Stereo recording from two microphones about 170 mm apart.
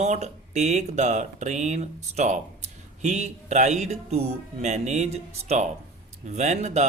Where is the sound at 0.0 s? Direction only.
45° right (ahead or behind).